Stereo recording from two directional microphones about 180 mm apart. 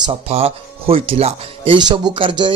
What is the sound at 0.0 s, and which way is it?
A man's voice, 30° right (ahead or behind).